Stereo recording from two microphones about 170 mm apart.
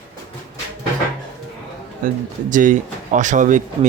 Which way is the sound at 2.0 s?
50° right (ahead or behind).